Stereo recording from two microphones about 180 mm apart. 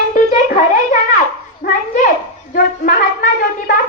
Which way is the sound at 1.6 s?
50° left (ahead or behind).